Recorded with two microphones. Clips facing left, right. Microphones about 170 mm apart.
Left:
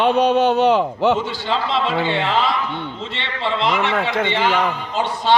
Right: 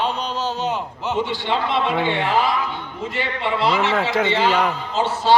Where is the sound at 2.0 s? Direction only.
25° left (ahead or behind).